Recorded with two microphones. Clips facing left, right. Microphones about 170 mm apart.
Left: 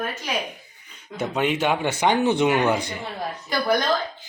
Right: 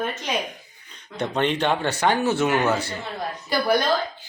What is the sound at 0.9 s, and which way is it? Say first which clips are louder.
Speech: even; 5° left (ahead or behind).